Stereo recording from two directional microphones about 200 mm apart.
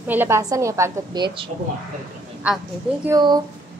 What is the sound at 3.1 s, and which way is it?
Speech, 20° right (ahead or behind).